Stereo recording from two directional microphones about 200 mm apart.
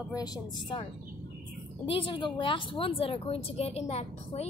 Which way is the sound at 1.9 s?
25° left (ahead or behind).